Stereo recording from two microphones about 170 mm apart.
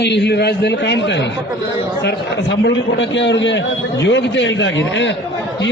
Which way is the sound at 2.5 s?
90° left.